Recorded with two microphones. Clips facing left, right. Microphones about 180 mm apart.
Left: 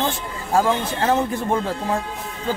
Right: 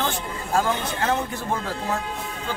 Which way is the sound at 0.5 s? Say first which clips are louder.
Left 4 dB; 30° left (ahead or behind).